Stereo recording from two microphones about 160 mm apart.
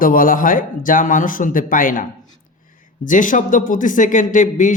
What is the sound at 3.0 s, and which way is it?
Speech, 55° left (ahead or behind).